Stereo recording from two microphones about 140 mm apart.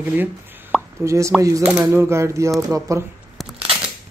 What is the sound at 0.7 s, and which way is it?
Plop, centre (ahead or behind).